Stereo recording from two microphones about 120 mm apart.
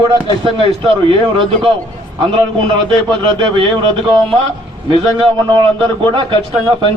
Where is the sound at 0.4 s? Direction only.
50° right (ahead or behind).